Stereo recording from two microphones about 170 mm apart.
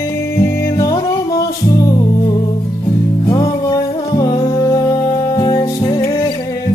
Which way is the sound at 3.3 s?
20° left (ahead or behind).